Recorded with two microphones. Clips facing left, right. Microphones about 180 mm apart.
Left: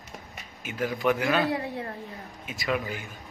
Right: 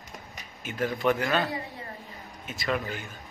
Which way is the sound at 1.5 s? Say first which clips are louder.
Left 6 dB; 65° left (ahead or behind).